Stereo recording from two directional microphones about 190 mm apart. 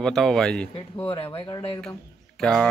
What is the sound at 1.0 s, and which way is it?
Speech, 30° left (ahead or behind).